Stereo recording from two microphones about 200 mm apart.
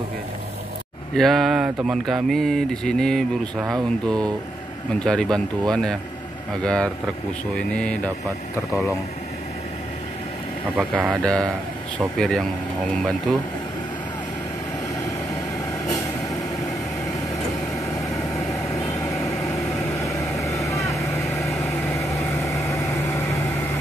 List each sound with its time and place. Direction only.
1.1 s speech: centre (ahead or behind)
5.0 s speech: 5° left (ahead or behind)
10.8 s speech: 5° right (ahead or behind)
11.2 s speech: 5° left (ahead or behind)
18.5 s vehicle: 15° left (ahead or behind)
21.3 s vehicle: centre (ahead or behind)
21.5 s vehicle: 15° left (ahead or behind)